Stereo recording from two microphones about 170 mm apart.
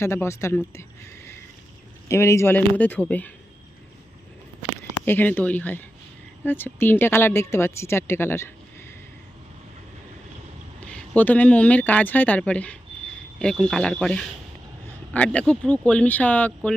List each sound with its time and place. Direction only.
0.0 s speech: 15° left (ahead or behind)
5.0 s speech: 10° left (ahead or behind)
10.8 s speech: 10° left (ahead or behind)